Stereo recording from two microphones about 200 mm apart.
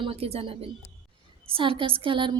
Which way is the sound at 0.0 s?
30° right (ahead or behind).